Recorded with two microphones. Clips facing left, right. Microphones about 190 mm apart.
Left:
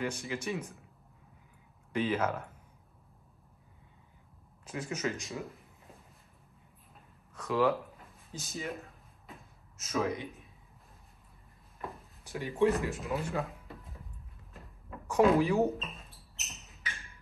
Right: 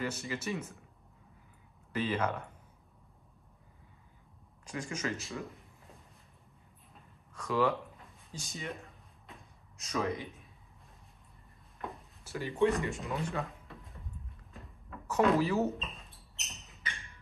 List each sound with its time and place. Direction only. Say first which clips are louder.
0.0 s speech: left 1 dB; 10° left (ahead or behind)
2.0 s speech: left 2 dB; 5° left (ahead or behind)
4.6 s speech: left 2 dB; 5° left (ahead or behind)
6.9 s a sound: right 1 dB; 5° left (ahead or behind)
11.8 s speech: even; centre (ahead or behind)
14.5 s a sound: left 2 dB; centre (ahead or behind)
15.0 s speech: left 3 dB; 10° left (ahead or behind)
15.7 s music: left 2 dB; centre (ahead or behind)